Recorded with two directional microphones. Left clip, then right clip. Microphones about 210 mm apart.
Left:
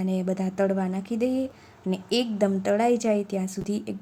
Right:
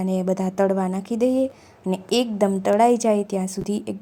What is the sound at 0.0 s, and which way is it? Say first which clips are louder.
A woman's voice: right 5 dB; 10° right (ahead or behind).